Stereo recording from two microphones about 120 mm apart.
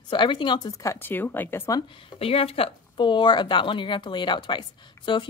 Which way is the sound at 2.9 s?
40° left (ahead or behind).